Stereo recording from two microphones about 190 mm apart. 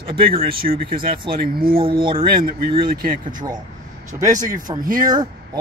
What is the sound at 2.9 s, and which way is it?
Speech, 50° right (ahead or behind).